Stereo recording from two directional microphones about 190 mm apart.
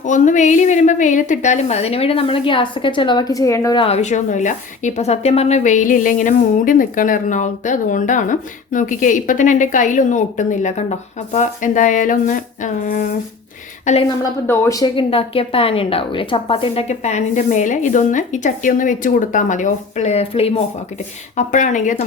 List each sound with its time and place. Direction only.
0.0 s a woman's voice: 40° left (ahead or behind); by 3.8 s 15° left (ahead or behind)
3.8 s a woman's voice: 35° left (ahead or behind)
14.4 s a woman's voice: 10° left (ahead or behind); by 22.0 s 40° left (ahead or behind)